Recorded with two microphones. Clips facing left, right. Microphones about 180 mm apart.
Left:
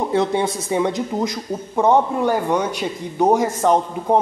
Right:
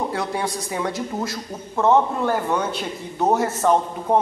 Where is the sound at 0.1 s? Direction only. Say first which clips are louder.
Left 6 dB; 20° left (ahead or behind).